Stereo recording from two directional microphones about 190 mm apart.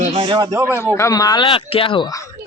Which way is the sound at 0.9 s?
15° left (ahead or behind).